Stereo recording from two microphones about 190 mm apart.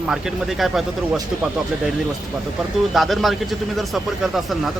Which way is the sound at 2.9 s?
Centre (ahead or behind).